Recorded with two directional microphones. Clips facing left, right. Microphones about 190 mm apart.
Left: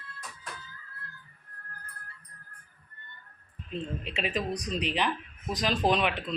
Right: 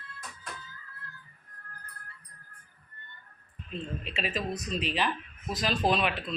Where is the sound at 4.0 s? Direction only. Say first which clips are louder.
Left 1 dB; 20° left (ahead or behind).